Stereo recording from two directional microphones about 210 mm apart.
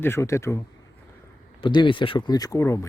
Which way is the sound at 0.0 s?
10° left (ahead or behind).